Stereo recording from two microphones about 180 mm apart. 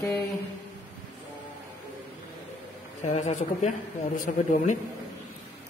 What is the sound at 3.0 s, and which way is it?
Speech, 40° left (ahead or behind).